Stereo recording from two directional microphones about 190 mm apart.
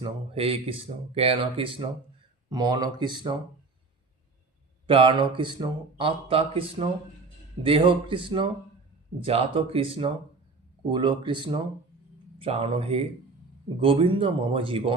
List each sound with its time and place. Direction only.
0.0 s speech: 30° right (ahead or behind)
4.9 s speech: 30° right (ahead or behind)